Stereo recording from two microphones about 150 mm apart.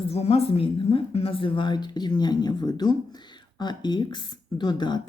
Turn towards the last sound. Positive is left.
turn(degrees=30)  # may be behind; listen again after turning